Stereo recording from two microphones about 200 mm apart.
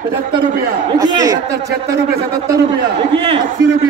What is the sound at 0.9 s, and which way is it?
Speech, 20° right (ahead or behind).